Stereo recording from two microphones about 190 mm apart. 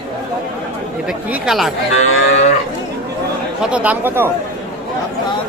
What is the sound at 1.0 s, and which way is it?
Speech, centre (ahead or behind).